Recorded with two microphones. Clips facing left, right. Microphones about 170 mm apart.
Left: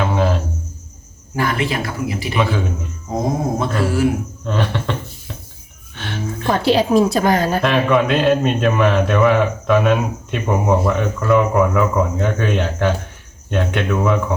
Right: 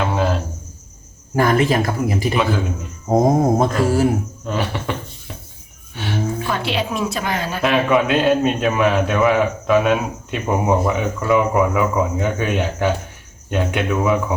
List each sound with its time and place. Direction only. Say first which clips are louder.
0.0 s a sound: left 1 dB; centre (ahead or behind)
1.4 s speech: right 4 dB; 45° right (ahead or behind)
2.3 s a man's voice: left 2 dB; centre (ahead or behind)
3.1 s speech: right 7 dB; 50° right (ahead or behind)
3.6 s a sound: right 2 dB; 40° right (ahead or behind)
4.4 s speech: left 2 dB; 5° right (ahead or behind)
6.5 s a woman's voice: left 12 dB; 40° left (ahead or behind)
7.6 s a man's voice: left 1 dB; 5° right (ahead or behind)